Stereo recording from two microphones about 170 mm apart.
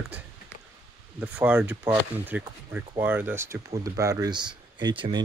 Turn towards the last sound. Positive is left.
turn(degrees=-25)  # may be behind; listen again after turning